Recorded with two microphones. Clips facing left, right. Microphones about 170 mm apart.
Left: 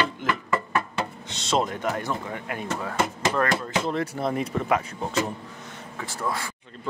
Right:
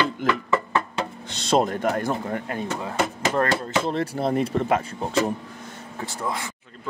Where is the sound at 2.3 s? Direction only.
35° right (ahead or behind).